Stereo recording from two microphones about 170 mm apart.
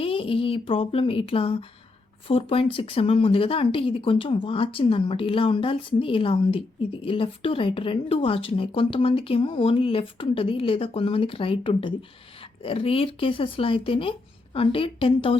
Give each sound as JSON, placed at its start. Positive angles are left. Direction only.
{"t": 0.0, "sound": "speech", "side_deg": 30}